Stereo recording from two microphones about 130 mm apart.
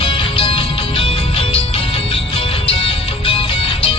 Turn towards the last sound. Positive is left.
turn(degrees=45)  # may be behind; listen again after turning